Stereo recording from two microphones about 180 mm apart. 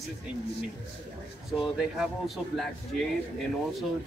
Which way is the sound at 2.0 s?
Centre (ahead or behind).